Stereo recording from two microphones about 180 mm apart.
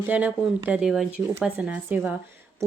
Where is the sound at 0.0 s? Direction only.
10° right (ahead or behind).